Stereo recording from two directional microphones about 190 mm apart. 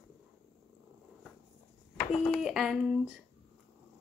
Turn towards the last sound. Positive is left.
turn(degrees=0)  # may be behind; listen again after turning